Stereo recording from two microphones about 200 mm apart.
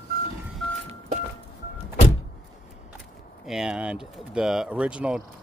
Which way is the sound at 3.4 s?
5° right (ahead or behind).